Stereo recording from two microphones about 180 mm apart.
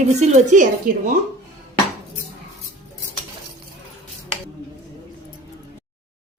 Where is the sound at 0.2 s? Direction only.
45° right (ahead or behind).